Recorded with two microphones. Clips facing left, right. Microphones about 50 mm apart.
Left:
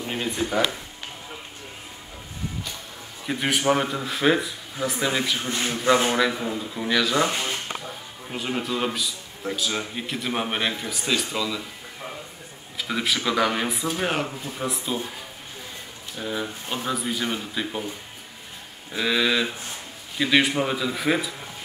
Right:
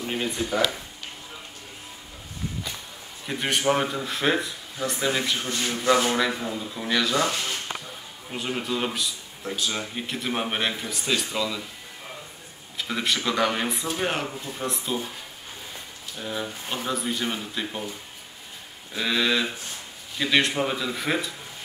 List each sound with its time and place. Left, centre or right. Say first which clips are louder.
0.0 s a sound: even; centre
3.3 s speech: left 2 dB; centre
5.4 s a man's voice: left 2 dB; left
6.1 s speech: left 2 dB; centre
6.4 s a man's voice: left 2 dB; centre
6.9 s speech: left 2 dB; centre
7.2 s a man's voice: left 2 dB; left
8.3 s speech: left 1 dB; centre
12.7 s speech: left 1 dB; centre
16.2 s speech: left 2 dB; centre
18.9 s speech: left 2 dB; centre